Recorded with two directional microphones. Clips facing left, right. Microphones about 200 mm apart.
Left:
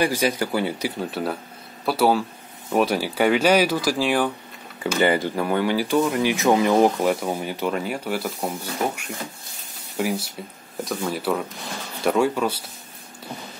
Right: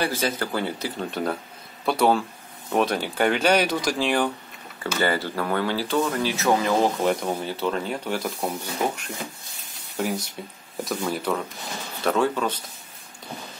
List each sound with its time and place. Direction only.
0.0 s speech: 15° left (ahead or behind)
4.9 s speech: 20° left (ahead or behind)
7.0 s speech: 5° left (ahead or behind)